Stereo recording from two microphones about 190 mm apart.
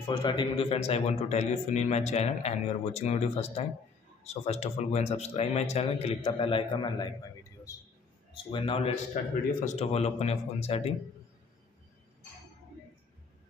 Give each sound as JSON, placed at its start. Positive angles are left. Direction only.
{"t": 0.1, "sound": "a man's voice", "side_deg": 25}
{"t": 8.5, "sound": "a man's voice", "side_deg": 30}